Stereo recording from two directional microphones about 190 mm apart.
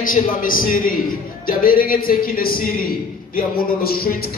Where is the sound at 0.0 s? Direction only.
45° left (ahead or behind).